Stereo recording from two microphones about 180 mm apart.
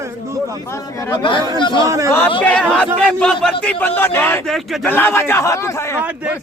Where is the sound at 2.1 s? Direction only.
10° left (ahead or behind).